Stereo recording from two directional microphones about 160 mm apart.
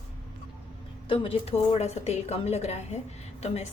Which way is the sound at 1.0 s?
35° left (ahead or behind).